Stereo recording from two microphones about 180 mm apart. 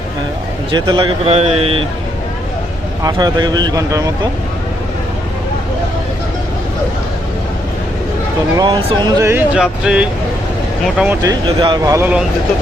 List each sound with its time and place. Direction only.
0.7 s speech: 25° right (ahead or behind)
3.0 s speech: 20° right (ahead or behind)
8.5 s speech: 25° right (ahead or behind); by 11.2 s 10° right (ahead or behind)
11.2 s speech: 25° right (ahead or behind)